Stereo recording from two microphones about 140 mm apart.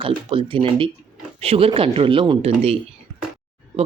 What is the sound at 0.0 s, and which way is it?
Speech, 40° right (ahead or behind).